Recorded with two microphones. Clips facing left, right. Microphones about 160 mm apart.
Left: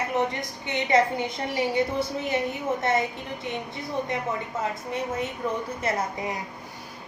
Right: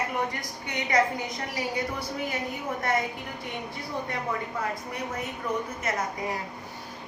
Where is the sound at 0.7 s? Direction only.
25° left (ahead or behind).